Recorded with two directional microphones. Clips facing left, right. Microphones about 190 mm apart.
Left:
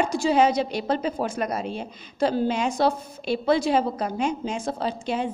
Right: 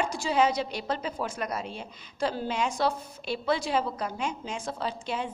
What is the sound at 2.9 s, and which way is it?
Speech, 20° left (ahead or behind).